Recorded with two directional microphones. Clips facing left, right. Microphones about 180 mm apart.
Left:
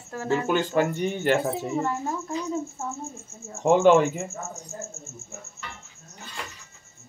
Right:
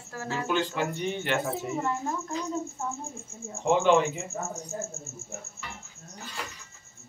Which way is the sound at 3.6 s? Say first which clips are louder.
Left 5 dB; 45° left (ahead or behind).